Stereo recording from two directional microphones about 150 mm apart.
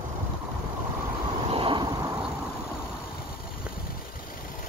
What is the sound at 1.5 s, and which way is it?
Vehicle, 35° right (ahead or behind).